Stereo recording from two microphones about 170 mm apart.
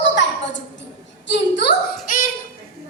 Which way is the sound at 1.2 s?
85° left.